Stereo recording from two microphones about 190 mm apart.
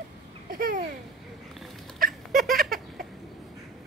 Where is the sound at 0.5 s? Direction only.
50° right (ahead or behind).